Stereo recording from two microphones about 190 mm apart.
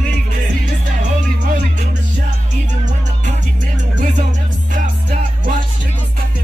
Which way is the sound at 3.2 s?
40° right (ahead or behind).